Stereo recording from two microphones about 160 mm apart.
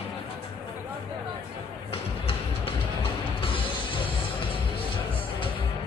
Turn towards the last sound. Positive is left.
turn(degrees=30)  # may be behind; listen again after turning